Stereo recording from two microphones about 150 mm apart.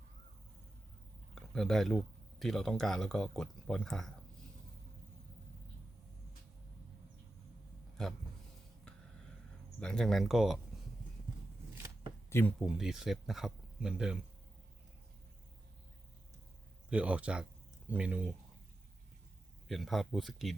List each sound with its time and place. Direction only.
1.4 s speech: centre (ahead or behind)
8.0 s speech: 5° left (ahead or behind)
9.8 s speech: 5° left (ahead or behind)
12.5 s speech: 5° right (ahead or behind)
16.9 s speech: 10° right (ahead or behind)
19.6 s speech: centre (ahead or behind)